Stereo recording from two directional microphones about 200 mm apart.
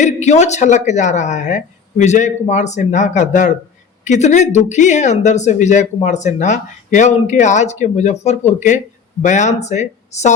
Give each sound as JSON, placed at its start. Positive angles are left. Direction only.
{"t": 0.0, "sound": "speech", "side_deg": 35}